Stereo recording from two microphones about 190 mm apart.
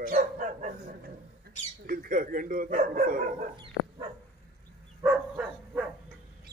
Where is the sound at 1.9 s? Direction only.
50° right (ahead or behind).